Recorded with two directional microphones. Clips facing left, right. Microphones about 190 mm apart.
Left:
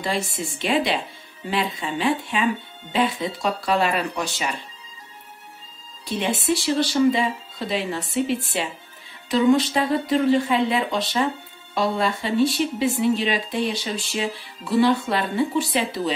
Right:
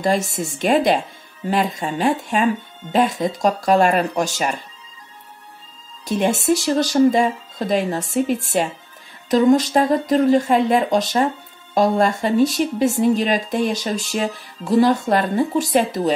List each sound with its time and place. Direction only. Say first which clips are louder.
0.0 s speech: right 6 dB; 45° right (ahead or behind)
6.0 s speech: right 5 dB; 45° right (ahead or behind)